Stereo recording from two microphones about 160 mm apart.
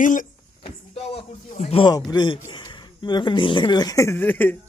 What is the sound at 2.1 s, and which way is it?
Speech, 30° left (ahead or behind).